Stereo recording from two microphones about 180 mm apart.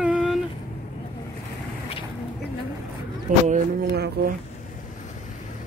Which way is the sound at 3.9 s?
60° right (ahead or behind).